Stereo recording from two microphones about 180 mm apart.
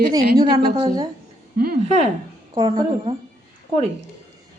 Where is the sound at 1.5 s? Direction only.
55° right (ahead or behind).